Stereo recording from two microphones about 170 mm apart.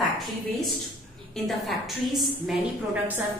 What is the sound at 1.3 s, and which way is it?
A woman's voice, centre (ahead or behind).